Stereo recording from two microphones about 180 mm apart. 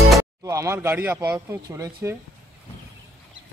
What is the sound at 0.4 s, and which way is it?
Speech, 15° right (ahead or behind).